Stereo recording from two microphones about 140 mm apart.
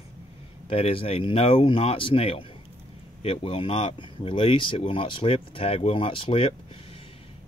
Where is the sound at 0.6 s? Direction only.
40° left (ahead or behind).